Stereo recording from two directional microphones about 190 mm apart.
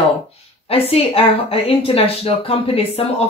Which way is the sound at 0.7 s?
30° left (ahead or behind).